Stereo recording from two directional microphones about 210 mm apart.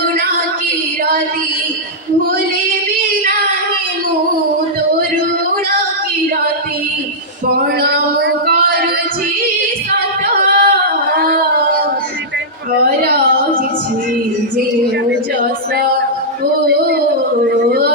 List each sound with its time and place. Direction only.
7.8 s music: 45° right (ahead or behind)
10.2 s singing: 40° right (ahead or behind)